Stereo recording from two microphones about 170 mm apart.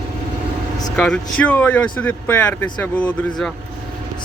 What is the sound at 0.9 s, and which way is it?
Speech, 5° left (ahead or behind).